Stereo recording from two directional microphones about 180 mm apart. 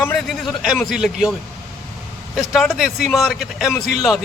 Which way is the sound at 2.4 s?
Centre (ahead or behind).